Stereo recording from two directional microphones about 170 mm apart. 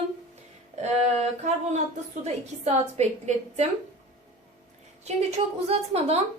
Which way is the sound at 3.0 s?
40° right (ahead or behind).